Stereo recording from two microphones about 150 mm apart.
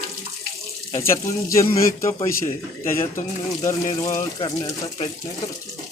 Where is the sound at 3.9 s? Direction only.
40° left (ahead or behind).